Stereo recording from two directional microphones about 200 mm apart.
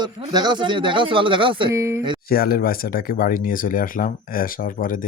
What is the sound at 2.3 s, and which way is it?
Speech, 50° left (ahead or behind).